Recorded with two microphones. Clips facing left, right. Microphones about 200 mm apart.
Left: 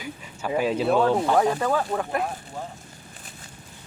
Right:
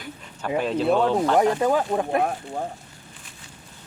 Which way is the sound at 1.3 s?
20° right (ahead or behind).